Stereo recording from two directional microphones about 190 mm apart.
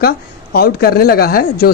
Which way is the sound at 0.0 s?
55° left (ahead or behind).